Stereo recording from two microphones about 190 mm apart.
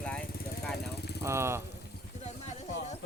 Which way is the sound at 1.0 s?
60° left (ahead or behind).